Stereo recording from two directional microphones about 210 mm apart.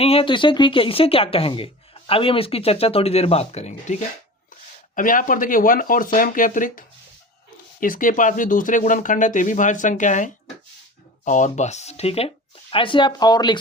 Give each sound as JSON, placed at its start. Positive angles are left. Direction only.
{"t": 0.0, "sound": "speech", "side_deg": 25}
{"t": 4.9, "sound": "speech", "side_deg": 40}